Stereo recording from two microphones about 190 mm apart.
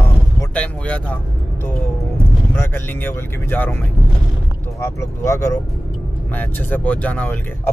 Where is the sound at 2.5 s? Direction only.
10° left (ahead or behind).